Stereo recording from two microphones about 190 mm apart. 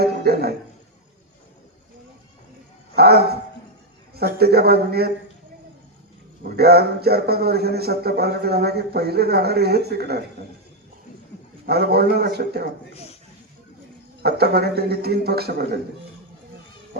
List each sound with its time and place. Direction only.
0.0 s a sound: 55° right (ahead or behind)
2.9 s a man's voice: 55° right (ahead or behind)
6.6 s speech: 55° right (ahead or behind)
11.6 s speech: 55° right (ahead or behind)
14.2 s speech: 55° right (ahead or behind)